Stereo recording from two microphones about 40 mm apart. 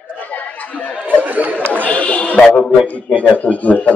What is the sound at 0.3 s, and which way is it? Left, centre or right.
Chatter, left.